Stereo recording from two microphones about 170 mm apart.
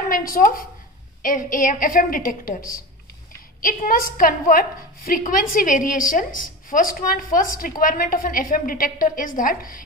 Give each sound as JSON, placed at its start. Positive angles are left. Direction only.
{"t": 0.1, "sound": "a woman's voice", "side_deg": 55}